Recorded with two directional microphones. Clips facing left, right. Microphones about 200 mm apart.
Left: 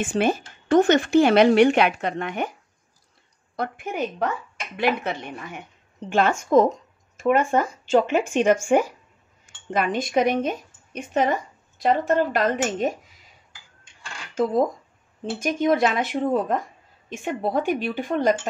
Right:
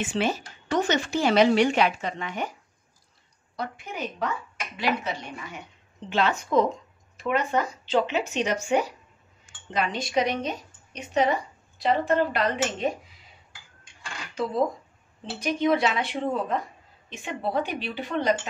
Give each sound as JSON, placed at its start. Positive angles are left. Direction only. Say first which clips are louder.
{"t": 0.0, "sound": "a woman's voice", "louder": "left 4 dB", "side_deg": 50}
{"t": 3.5, "sound": "a woman's voice", "louder": "left 6 dB", "side_deg": 55}
{"t": 14.3, "sound": "a woman's voice", "louder": "left 5 dB", "side_deg": 45}